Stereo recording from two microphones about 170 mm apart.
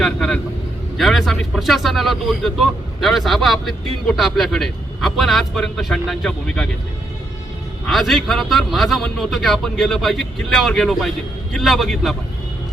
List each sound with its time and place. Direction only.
0.0 s vehicle: 5° left (ahead or behind)
0.9 s speech: centre (ahead or behind)
7.9 s speech: centre (ahead or behind)